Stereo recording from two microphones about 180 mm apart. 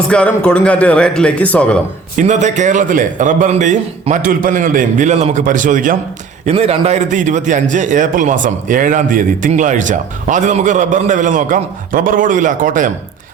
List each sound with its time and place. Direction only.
0.1 s a man's voice: 5° left (ahead or behind)
2.1 s a man's voice: 40° right (ahead or behind)
6.4 s a man's voice: 35° right (ahead or behind)